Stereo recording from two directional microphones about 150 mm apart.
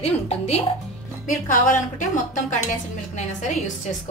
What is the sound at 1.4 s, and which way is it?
Speech, 60° left (ahead or behind).